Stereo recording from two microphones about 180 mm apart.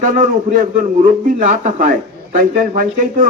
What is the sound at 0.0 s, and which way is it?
A man's voice, 45° right (ahead or behind).